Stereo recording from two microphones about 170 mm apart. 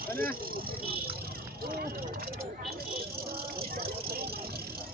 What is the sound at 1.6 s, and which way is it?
Vehicle, 60° right (ahead or behind).